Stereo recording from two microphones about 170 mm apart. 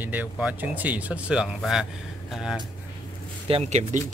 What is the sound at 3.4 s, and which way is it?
Speech, 35° right (ahead or behind).